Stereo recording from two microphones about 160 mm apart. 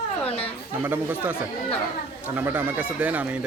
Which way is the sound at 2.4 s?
10° right (ahead or behind).